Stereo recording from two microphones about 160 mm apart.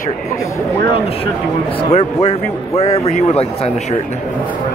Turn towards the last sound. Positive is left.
turn(degrees=40)  # may be behind; listen again after turning